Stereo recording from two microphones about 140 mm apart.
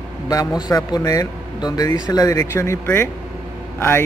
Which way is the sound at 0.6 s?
25° left (ahead or behind).